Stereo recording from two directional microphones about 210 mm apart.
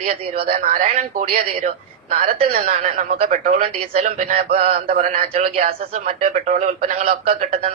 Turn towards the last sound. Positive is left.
turn(degrees=-35)  # may be behind; listen again after turning